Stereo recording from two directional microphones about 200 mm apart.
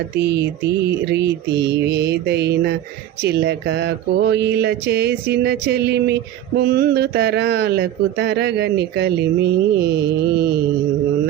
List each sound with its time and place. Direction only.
0.2 s speech: 55° right (ahead or behind)